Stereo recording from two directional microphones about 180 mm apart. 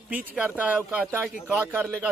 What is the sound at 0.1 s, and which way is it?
Speech, 10° right (ahead or behind).